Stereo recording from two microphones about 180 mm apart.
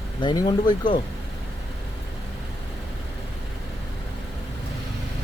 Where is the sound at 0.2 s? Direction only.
25° left (ahead or behind).